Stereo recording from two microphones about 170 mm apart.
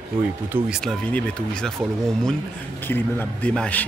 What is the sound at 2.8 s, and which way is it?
A man's voice, 10° left (ahead or behind).